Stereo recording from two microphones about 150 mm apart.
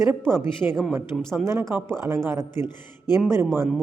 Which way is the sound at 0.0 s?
15° right (ahead or behind).